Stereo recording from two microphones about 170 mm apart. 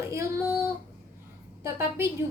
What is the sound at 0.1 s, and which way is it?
Child singing, 15° right (ahead or behind).